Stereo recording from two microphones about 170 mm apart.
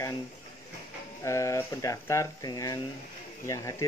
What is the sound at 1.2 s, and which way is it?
Speech, 15° left (ahead or behind).